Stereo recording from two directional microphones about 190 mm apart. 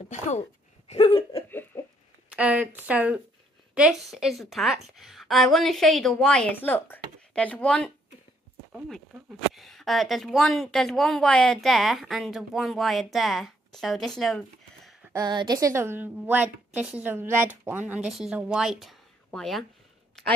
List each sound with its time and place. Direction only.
0.1 s a woman's voice: 35° left (ahead or behind)
1.3 s a sound: 15° left (ahead or behind)
2.3 s a woman's voice: 10° right (ahead or behind)
15.1 s a woman's voice: 20° right (ahead or behind); by 19.6 s centre (ahead or behind)